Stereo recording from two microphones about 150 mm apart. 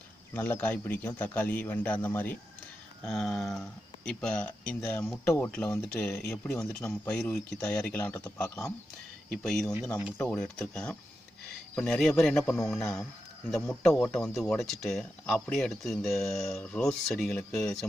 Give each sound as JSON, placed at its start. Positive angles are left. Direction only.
{"t": 0.3, "sound": "speech", "side_deg": 10}
{"t": 3.0, "sound": "speech", "side_deg": 0}
{"t": 9.3, "sound": "speech", "side_deg": 5}